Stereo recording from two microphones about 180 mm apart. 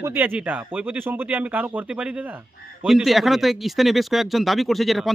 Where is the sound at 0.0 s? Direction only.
10° right (ahead or behind).